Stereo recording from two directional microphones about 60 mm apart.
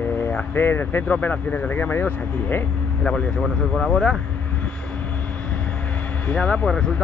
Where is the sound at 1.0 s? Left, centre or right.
Left.